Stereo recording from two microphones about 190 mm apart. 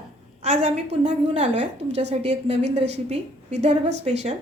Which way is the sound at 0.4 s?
35° right (ahead or behind).